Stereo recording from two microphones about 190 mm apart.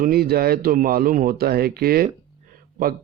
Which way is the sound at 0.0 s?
55° right (ahead or behind).